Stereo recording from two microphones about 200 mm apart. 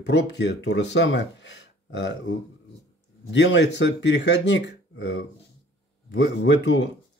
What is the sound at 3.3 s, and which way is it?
Speech, 65° left (ahead or behind).